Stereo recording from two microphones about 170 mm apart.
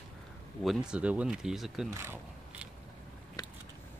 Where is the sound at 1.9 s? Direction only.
15° right (ahead or behind).